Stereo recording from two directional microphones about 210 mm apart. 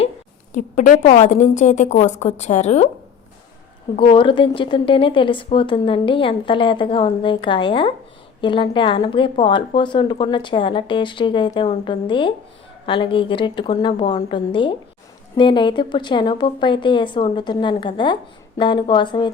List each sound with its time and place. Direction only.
0.5 s a woman's voice: 35° left (ahead or behind)
3.9 s a woman's voice: 25° left (ahead or behind)